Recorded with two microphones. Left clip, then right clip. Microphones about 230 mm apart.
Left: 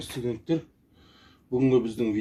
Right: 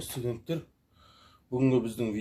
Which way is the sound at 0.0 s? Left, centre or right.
Right.